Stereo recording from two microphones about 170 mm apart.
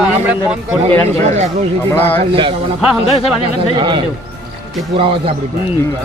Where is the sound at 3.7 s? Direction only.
30° right (ahead or behind).